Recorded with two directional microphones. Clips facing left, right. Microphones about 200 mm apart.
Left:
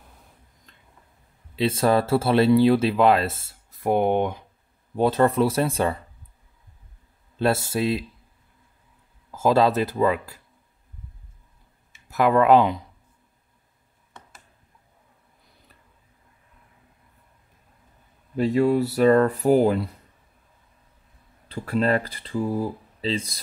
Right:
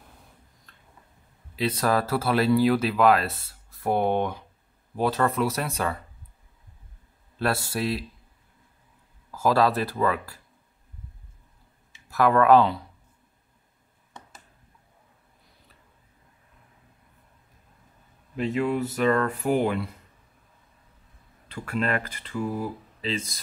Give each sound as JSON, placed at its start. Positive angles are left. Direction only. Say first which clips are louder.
{"t": 1.5, "sound": "speech", "louder": "left 4 dB", "side_deg": 25}
{"t": 4.9, "sound": "speech", "louder": "left 5 dB", "side_deg": 25}
{"t": 7.3, "sound": "speech", "louder": "left 4 dB", "side_deg": 25}
{"t": 9.3, "sound": "speech", "louder": "left 3 dB", "side_deg": 20}
{"t": 12.1, "sound": "speech", "louder": "left 1 dB", "side_deg": 20}
{"t": 18.3, "sound": "speech", "louder": "left 6 dB", "side_deg": 35}
{"t": 21.5, "sound": "speech", "louder": "left 5 dB", "side_deg": 35}